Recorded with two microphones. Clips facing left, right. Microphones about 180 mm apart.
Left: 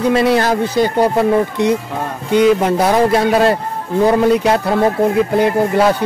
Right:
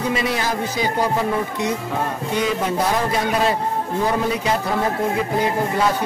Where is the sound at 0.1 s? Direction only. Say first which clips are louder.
Left 9 dB; 65° left (ahead or behind).